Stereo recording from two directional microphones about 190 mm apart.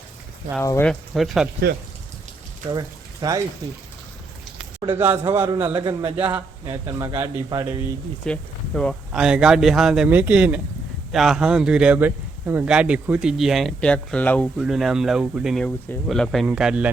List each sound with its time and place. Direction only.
0.6 s speech: 15° left (ahead or behind)
0.9 s speech: centre (ahead or behind)
2.6 s speech: 20° right (ahead or behind)
4.8 s speech: 10° right (ahead or behind)
8.2 s speech: 5° left (ahead or behind)